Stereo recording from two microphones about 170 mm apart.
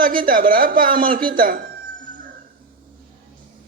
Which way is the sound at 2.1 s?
55° right (ahead or behind).